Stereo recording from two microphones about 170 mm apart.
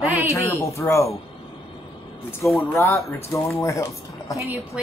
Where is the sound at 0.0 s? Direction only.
10° right (ahead or behind).